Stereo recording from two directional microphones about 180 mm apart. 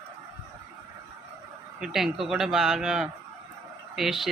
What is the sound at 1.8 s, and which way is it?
Speech, centre (ahead or behind).